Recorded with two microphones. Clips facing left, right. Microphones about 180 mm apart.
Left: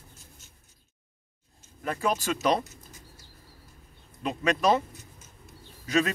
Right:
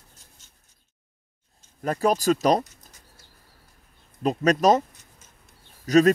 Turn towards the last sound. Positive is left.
turn(degrees=-40)  # may be behind; listen again after turning